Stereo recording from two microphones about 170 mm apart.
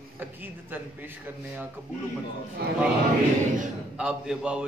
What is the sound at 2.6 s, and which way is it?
Speech, 70° right (ahead or behind).